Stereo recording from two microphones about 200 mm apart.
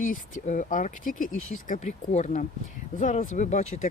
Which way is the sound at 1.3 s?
90° left.